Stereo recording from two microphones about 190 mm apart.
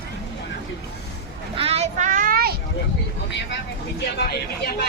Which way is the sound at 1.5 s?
30° right (ahead or behind).